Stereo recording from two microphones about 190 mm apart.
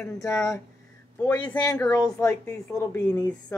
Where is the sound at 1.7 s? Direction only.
10° left (ahead or behind).